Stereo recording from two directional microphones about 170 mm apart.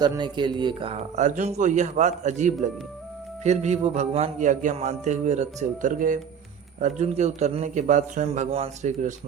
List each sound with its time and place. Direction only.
0.0 s a man's voice: 25° right (ahead or behind); by 9.1 s 45° right (ahead or behind)